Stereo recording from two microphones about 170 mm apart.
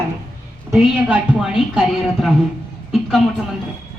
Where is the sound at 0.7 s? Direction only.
5° right (ahead or behind).